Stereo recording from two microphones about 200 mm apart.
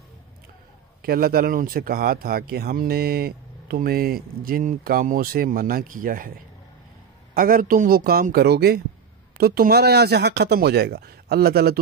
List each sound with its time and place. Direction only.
1.0 s speech: 50° right (ahead or behind)
7.3 s speech: 45° right (ahead or behind)